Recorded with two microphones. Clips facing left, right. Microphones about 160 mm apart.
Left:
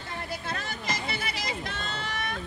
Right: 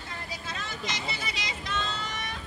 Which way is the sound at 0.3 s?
60° left (ahead or behind).